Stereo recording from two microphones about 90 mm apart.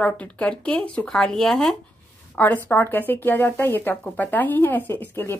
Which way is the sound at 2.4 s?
20° left (ahead or behind).